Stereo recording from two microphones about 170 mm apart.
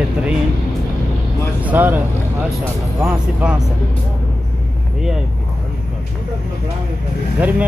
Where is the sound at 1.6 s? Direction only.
10° right (ahead or behind).